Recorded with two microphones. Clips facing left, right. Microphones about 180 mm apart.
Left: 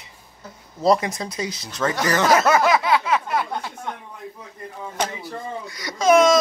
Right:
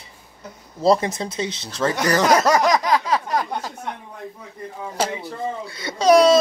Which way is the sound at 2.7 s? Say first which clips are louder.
Even; 40° right (ahead or behind).